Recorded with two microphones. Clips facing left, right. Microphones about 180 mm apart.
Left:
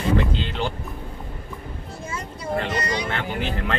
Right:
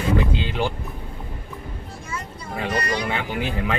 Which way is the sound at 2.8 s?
20° left (ahead or behind).